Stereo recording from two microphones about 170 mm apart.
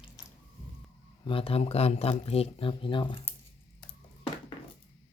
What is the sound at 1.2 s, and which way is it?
Speech, 30° left (ahead or behind).